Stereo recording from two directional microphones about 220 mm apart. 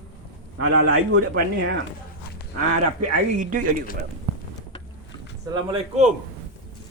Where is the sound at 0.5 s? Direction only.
55° right (ahead or behind).